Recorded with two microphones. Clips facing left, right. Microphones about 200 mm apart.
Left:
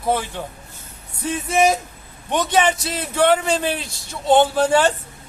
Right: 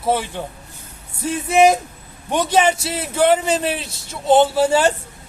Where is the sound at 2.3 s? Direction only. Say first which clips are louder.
Right 2 dB; 10° right (ahead or behind).